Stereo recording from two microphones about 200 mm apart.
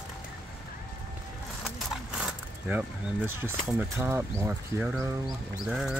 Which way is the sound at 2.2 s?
5° right (ahead or behind).